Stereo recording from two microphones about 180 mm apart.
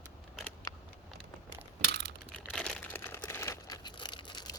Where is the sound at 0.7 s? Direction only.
20° left (ahead or behind).